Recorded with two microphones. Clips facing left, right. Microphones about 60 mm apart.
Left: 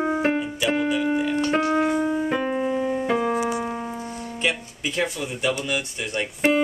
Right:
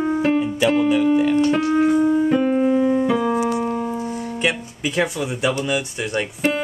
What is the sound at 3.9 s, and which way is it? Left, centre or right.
Music, centre.